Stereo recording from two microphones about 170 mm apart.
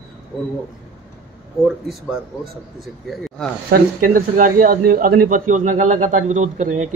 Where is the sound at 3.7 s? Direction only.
55° right (ahead or behind).